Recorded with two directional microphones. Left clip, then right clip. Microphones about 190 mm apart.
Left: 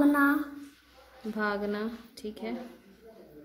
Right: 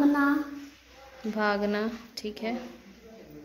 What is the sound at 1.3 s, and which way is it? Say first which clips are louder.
A woman's voice: right 4 dB; 10° left (ahead or behind).